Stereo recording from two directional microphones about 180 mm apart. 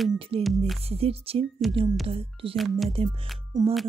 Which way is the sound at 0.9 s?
35° right (ahead or behind).